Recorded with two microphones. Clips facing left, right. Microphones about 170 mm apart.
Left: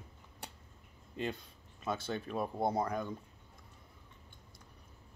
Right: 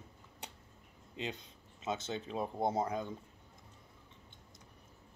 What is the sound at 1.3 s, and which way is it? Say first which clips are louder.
Speech: even; 20° right (ahead or behind).